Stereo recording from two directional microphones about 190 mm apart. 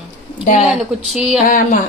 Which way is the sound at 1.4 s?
45° left (ahead or behind).